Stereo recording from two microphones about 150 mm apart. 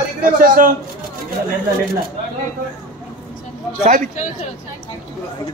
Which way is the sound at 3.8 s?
60° right (ahead or behind).